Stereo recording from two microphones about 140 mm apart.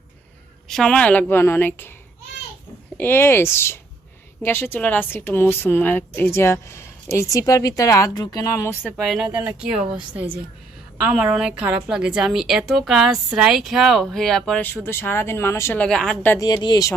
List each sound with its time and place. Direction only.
0.7 s a woman's voice: 5° left (ahead or behind)
3.0 s a woman's voice: 15° left (ahead or behind)
8.8 s a woman's voice: centre (ahead or behind)
16.3 s speech: 25° left (ahead or behind)